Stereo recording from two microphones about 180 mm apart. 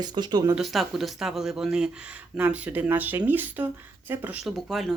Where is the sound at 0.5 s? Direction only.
Centre (ahead or behind).